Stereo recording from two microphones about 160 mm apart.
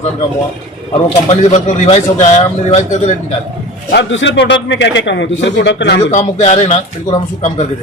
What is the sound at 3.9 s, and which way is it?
A man's voice, 90° left.